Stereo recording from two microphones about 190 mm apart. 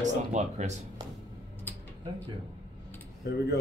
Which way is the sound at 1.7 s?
10° left (ahead or behind).